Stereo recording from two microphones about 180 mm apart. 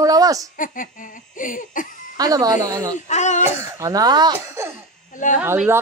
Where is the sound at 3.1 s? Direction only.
40° left (ahead or behind).